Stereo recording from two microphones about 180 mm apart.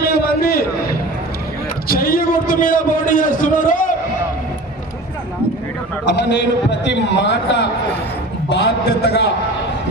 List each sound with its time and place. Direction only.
0.0 s a sound: 60° left (ahead or behind)
1.9 s a man's voice: 55° left (ahead or behind)
6.1 s a man's voice: 75° left (ahead or behind)